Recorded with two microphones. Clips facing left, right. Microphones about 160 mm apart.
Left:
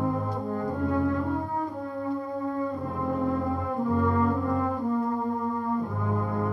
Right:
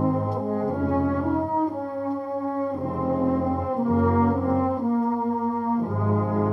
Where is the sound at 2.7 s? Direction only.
30° right (ahead or behind).